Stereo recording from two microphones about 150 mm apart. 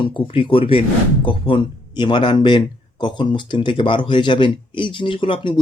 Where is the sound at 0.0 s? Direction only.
35° left (ahead or behind).